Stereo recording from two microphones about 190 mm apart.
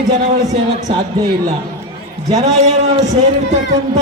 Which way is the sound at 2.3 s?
35° right (ahead or behind).